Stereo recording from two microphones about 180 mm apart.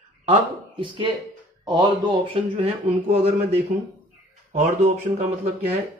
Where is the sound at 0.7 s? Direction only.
25° right (ahead or behind).